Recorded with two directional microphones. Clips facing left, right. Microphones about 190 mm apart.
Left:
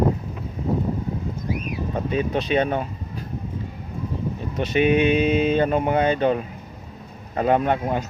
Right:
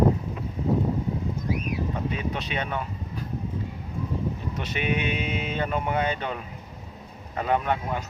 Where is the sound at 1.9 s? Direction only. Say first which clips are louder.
Left 6 dB; 35° left (ahead or behind).